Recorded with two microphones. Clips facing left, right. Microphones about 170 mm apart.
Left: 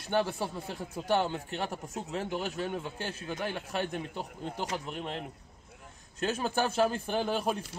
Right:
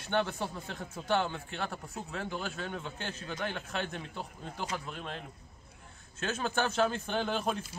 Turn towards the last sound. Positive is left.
turn(degrees=10)  # may be behind; listen again after turning